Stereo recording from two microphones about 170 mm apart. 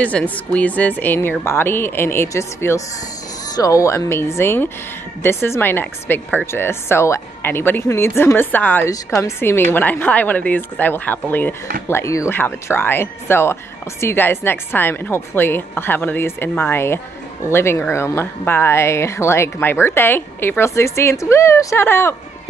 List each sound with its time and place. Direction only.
0.0 s speech: 10° left (ahead or behind)